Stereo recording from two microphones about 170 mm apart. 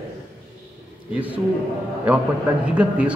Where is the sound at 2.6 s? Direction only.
5° right (ahead or behind).